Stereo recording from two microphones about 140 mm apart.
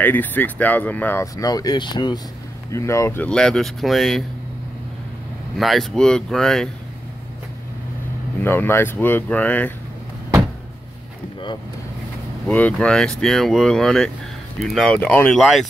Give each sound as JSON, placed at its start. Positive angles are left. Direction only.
{"t": 0.0, "sound": "speech", "side_deg": 10}
{"t": 1.2, "sound": "speech", "side_deg": 25}
{"t": 2.7, "sound": "speech", "side_deg": 20}
{"t": 3.3, "sound": "speech", "side_deg": 5}
{"t": 5.6, "sound": "speech", "side_deg": 0}
{"t": 8.4, "sound": "speech", "side_deg": 15}
{"t": 12.4, "sound": "speech", "side_deg": 5}
{"t": 15.0, "sound": "speech", "side_deg": 10}
{"t": 15.3, "sound": "speech", "side_deg": 0}